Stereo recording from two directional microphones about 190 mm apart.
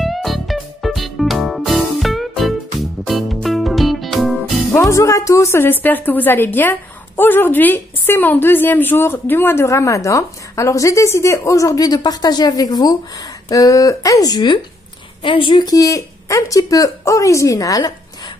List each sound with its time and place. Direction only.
0.0 s music: centre (ahead or behind)
4.7 s a woman's voice: 15° left (ahead or behind)